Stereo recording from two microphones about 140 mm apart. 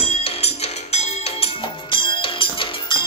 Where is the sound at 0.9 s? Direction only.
40° left (ahead or behind).